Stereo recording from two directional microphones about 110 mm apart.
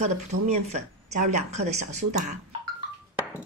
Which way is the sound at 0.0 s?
90° right.